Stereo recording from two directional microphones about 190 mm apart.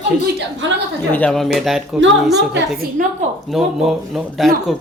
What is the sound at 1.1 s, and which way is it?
Speech, 5° left (ahead or behind).